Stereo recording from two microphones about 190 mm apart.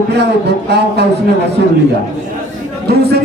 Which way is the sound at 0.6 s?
60° right (ahead or behind).